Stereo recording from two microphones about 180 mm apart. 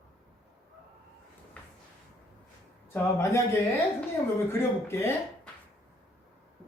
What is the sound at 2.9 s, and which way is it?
Speech, 15° left (ahead or behind).